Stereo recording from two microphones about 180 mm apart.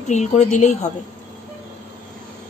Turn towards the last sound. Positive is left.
turn(degrees=40)  # may be behind; listen again after turning